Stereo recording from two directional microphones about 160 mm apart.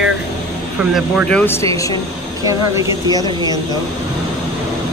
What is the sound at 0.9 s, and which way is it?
A woman's voice, 10° left (ahead or behind).